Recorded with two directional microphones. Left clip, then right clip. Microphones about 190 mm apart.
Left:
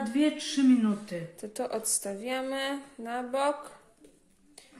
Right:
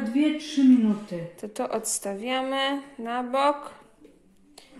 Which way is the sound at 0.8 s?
20° left (ahead or behind).